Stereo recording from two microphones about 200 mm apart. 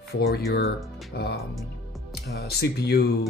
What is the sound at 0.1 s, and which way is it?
Speech, 55° left (ahead or behind).